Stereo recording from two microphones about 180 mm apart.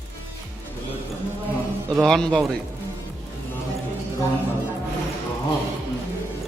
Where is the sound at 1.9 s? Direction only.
5° left (ahead or behind).